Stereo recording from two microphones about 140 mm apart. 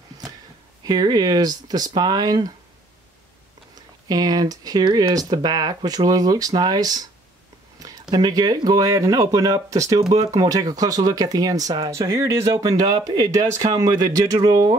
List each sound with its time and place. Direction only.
0.8 s speech: 30° right (ahead or behind)
4.1 s speech: 30° right (ahead or behind)
8.1 s speech: 30° right (ahead or behind)